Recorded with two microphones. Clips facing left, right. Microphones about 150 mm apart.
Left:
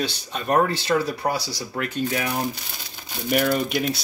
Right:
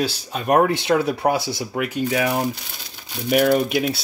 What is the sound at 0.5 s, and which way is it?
Speech, 20° right (ahead or behind).